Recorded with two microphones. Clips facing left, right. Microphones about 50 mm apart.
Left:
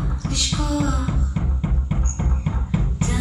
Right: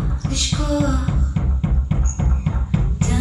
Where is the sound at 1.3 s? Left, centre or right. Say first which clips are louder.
Right 2 dB; centre.